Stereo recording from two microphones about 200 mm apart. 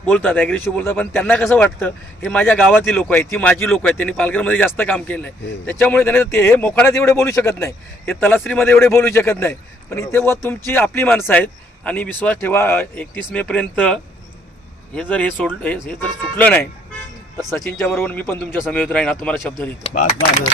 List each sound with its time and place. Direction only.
0.1 s speech: 5° left (ahead or behind)
15.4 s speech: 5° left (ahead or behind)
19.8 s speech: 35° left (ahead or behind)